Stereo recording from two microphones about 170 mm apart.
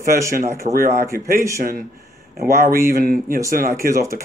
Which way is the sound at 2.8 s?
60° right (ahead or behind).